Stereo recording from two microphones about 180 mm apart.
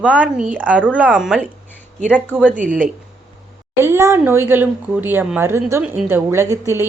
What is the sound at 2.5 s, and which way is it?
Speech, 45° right (ahead or behind).